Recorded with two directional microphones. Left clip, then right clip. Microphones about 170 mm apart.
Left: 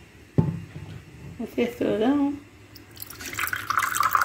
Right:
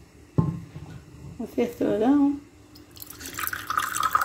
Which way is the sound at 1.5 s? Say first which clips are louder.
Even; 5° right (ahead or behind).